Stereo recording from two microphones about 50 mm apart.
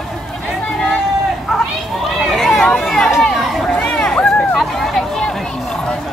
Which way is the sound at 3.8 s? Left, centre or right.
Centre.